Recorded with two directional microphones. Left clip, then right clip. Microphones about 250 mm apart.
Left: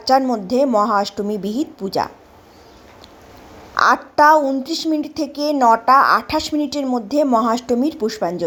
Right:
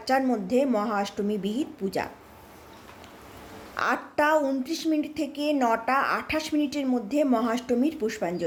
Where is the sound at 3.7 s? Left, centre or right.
Centre.